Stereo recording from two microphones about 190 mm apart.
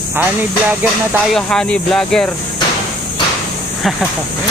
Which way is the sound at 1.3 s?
5° left (ahead or behind).